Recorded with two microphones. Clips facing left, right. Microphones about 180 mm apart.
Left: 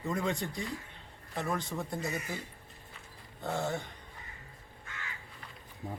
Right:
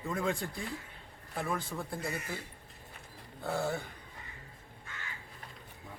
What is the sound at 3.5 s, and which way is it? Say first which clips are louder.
Speech: even; 5° right (ahead or behind).